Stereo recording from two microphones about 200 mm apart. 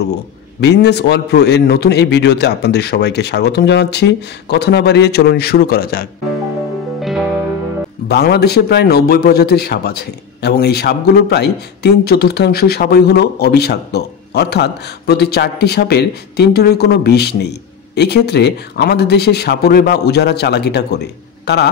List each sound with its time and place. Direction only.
0.6 s a man's voice: 55° left (ahead or behind)
7.0 s music: centre (ahead or behind)
8.1 s a man's voice: 55° left (ahead or behind)